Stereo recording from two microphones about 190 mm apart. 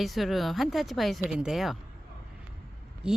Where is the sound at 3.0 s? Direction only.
5° right (ahead or behind).